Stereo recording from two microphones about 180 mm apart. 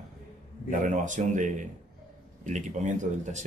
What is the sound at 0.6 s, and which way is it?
A man's voice, 45° right (ahead or behind).